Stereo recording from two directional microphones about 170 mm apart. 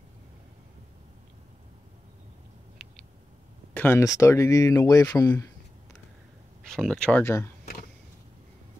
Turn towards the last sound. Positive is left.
turn(degrees=10)  # may be behind; listen again after turning